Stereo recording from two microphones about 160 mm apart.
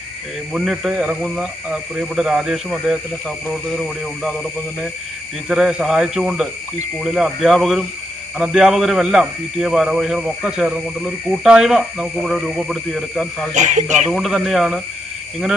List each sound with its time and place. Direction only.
0.5 s speech: 5° right (ahead or behind)
5.5 s speech: 5° right (ahead or behind)
13.5 s speech: 50° right (ahead or behind)
14.1 s speech: centre (ahead or behind)